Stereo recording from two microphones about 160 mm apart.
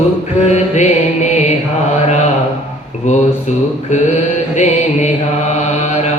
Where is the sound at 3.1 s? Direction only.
50° left (ahead or behind).